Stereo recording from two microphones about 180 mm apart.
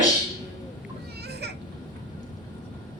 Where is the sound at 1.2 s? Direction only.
65° right (ahead or behind).